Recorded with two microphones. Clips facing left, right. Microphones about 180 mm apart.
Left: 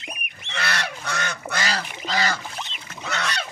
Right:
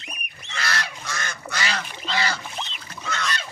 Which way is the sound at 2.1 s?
40° left (ahead or behind).